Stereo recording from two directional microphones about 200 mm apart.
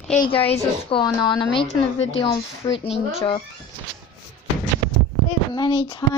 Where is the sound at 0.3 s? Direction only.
25° left (ahead or behind).